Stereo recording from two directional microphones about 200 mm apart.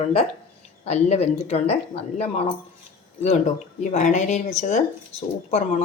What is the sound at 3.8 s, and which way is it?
Speech, 35° left (ahead or behind).